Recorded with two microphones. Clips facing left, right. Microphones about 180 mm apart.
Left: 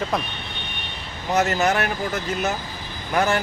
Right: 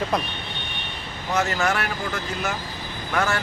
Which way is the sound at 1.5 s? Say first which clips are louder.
Left 3 dB; 20° left (ahead or behind).